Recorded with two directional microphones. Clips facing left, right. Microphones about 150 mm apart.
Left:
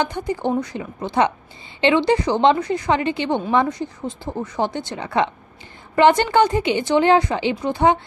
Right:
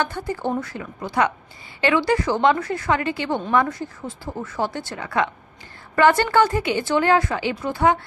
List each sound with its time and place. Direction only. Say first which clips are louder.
0.0 s a woman's voice: left 2 dB; 20° left (ahead or behind)